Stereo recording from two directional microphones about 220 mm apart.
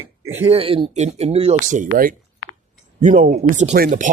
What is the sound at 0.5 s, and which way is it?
Speech, 25° right (ahead or behind).